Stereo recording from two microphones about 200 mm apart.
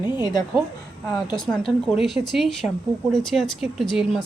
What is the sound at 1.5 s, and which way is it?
A woman's voice, centre (ahead or behind).